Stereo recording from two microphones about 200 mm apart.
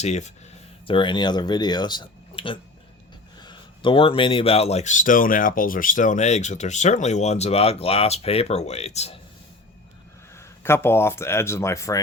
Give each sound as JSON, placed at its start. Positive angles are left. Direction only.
{"t": 0.0, "sound": "speech", "side_deg": 35}
{"t": 0.9, "sound": "speech", "side_deg": 25}
{"t": 10.3, "sound": "speech", "side_deg": 10}